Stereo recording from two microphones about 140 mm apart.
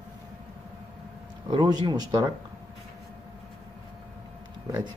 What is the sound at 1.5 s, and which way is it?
Speech, 30° right (ahead or behind).